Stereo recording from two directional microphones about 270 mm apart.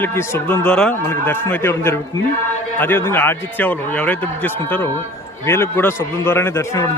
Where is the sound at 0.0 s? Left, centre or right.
Centre.